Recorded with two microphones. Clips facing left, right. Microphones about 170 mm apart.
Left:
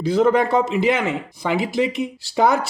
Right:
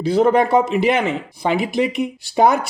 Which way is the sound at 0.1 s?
15° right (ahead or behind).